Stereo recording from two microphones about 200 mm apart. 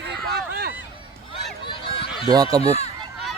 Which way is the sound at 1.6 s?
25° left (ahead or behind).